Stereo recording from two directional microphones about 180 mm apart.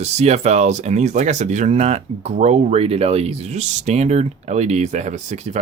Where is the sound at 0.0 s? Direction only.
40° right (ahead or behind).